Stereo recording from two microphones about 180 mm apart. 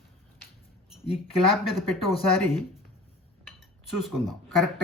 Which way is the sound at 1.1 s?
Centre (ahead or behind).